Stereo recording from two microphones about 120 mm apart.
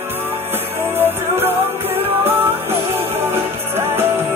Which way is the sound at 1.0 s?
15° right (ahead or behind).